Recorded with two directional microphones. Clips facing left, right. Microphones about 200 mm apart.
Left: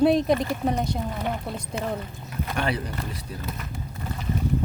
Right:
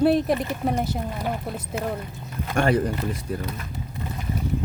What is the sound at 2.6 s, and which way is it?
Speech, 45° right (ahead or behind).